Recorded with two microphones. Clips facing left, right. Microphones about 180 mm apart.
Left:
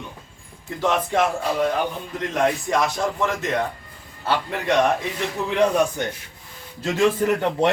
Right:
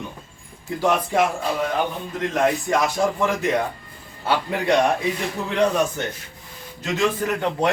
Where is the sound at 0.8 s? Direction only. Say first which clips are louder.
Right 1 dB; 10° right (ahead or behind).